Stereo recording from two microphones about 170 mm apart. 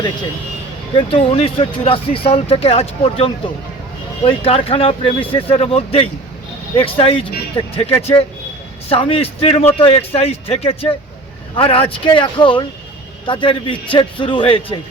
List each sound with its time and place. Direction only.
0.9 s a man's voice: 30° left (ahead or behind)